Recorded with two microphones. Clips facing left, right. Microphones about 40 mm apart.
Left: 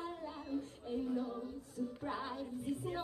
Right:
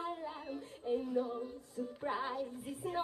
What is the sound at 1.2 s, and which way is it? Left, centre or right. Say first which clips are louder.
A capella: right 4 dB; centre.